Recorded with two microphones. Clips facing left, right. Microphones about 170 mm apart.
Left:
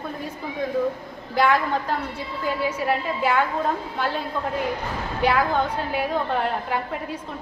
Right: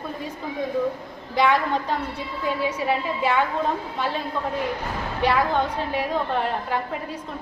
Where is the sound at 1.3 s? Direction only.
Centre (ahead or behind).